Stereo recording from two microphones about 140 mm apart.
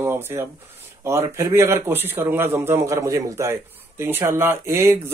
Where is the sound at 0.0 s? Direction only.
15° right (ahead or behind).